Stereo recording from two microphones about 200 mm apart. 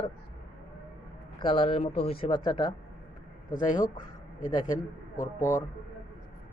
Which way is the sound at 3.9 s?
40° left (ahead or behind).